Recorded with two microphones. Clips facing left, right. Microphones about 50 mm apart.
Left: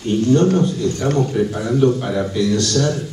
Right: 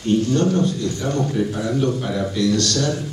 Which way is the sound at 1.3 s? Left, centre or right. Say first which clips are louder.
Left 3 dB; centre.